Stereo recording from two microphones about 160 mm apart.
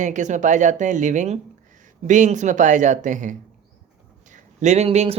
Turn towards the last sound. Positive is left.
turn(degrees=-40)  # may be behind; listen again after turning